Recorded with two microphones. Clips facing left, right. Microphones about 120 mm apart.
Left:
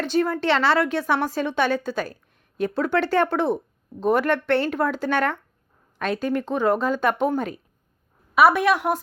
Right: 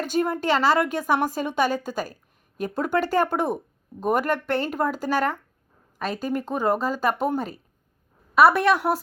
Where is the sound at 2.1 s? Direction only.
40° right (ahead or behind).